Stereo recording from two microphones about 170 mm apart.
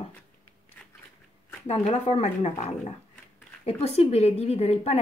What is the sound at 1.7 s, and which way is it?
A woman's voice, 35° left (ahead or behind).